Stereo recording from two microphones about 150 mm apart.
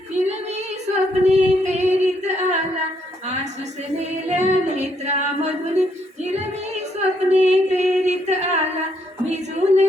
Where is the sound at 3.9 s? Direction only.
50° right (ahead or behind).